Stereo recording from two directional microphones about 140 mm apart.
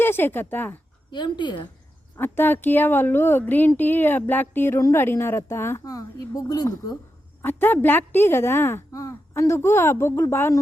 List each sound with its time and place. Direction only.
0.0 s speech: 15° left (ahead or behind)
1.1 s a woman's voice: 30° left (ahead or behind)
2.1 s speech: 15° left (ahead or behind)
7.4 s speech: 15° left (ahead or behind)